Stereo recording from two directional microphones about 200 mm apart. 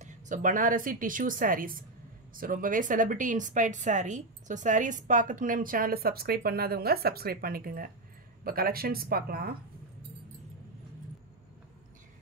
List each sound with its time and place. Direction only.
0.0 s speech: 40° right (ahead or behind)